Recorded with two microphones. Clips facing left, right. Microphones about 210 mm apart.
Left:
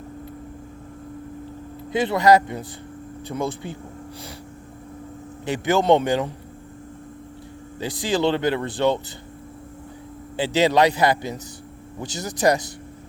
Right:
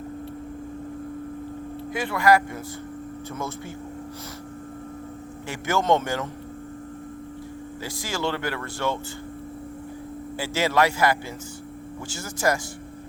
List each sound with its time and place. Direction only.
1.9 s a man's voice: 20° left (ahead or behind)
5.5 s a man's voice: 15° left (ahead or behind)
7.8 s speech: 20° left (ahead or behind)
10.3 s speech: 20° left (ahead or behind)